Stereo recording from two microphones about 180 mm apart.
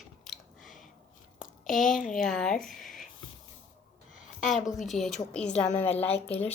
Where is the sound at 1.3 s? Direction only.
50° left (ahead or behind).